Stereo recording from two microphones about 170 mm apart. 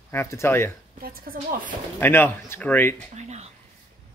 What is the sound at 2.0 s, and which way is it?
Speech, 10° left (ahead or behind).